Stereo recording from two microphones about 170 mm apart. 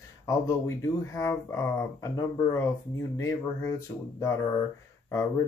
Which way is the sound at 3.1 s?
15° left (ahead or behind).